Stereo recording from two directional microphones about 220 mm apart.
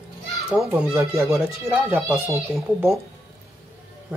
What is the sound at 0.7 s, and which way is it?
Speech, 10° right (ahead or behind).